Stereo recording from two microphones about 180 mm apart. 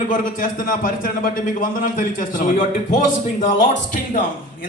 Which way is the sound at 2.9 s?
45° left (ahead or behind).